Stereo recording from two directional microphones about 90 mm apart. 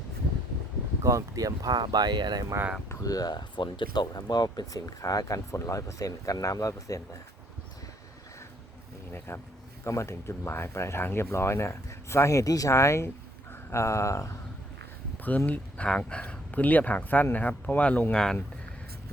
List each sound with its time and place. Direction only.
1.0 s speech: 40° right (ahead or behind)
2.9 s speech: 40° left (ahead or behind)
9.1 s speech: 25° left (ahead or behind)
15.2 s speech: 20° left (ahead or behind)